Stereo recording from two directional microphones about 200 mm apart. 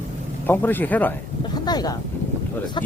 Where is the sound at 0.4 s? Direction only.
10° left (ahead or behind).